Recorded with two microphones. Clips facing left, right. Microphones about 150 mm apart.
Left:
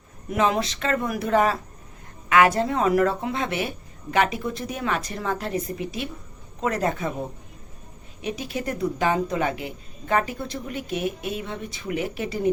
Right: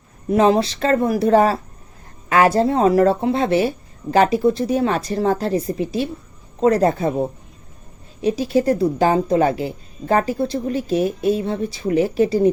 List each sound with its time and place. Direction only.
0.3 s a woman's voice: 30° right (ahead or behind)